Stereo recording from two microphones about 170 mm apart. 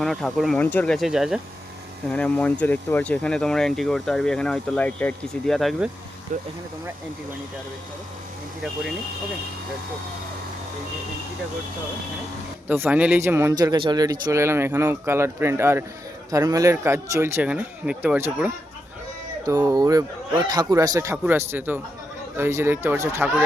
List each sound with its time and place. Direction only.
0.0 s speech: centre (ahead or behind)
6.3 s speech: 50° right (ahead or behind)
12.6 s speech: 10° right (ahead or behind)
19.5 s speech: 20° right (ahead or behind)